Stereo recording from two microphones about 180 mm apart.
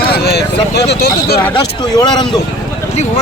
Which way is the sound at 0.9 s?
60° left (ahead or behind).